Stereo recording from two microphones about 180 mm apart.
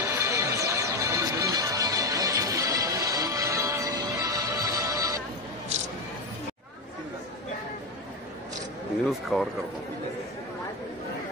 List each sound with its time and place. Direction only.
0.0 s music: 15° right (ahead or behind)
9.3 s speech: centre (ahead or behind)